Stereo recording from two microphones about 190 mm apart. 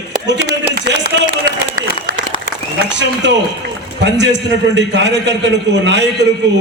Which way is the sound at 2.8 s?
70° right (ahead or behind).